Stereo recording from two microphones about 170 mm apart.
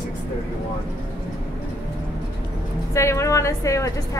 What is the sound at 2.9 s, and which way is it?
A woman's voice, 15° left (ahead or behind).